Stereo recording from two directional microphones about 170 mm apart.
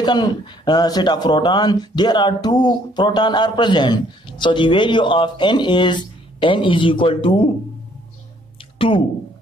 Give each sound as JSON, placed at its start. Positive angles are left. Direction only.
{"t": 0.0, "sound": "speech", "side_deg": 25}
{"t": 8.7, "sound": "speech", "side_deg": 30}